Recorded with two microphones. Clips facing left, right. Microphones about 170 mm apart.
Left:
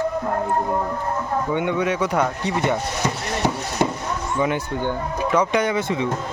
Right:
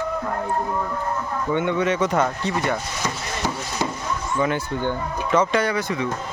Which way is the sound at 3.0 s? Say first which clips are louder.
Left 4 dB; 65° left (ahead or behind).